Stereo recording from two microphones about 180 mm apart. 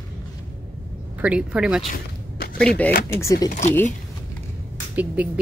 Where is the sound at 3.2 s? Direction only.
20° left (ahead or behind).